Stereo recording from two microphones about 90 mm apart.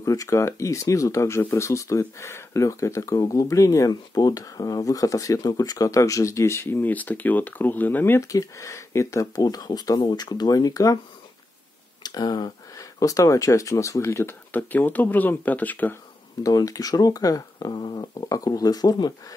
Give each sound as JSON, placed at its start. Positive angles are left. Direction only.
{"t": 0.0, "sound": "speech", "side_deg": 40}
{"t": 8.3, "sound": "speech", "side_deg": 35}
{"t": 12.0, "sound": "a sound", "side_deg": 50}
{"t": 13.0, "sound": "speech", "side_deg": 40}
{"t": 16.4, "sound": "speech", "side_deg": 40}